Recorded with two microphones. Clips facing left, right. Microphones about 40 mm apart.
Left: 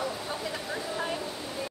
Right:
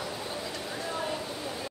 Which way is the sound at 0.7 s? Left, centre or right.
Centre.